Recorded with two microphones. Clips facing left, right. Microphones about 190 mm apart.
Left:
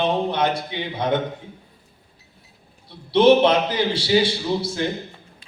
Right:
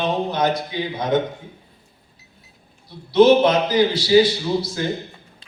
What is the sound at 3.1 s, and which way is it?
A man's voice, 30° left (ahead or behind).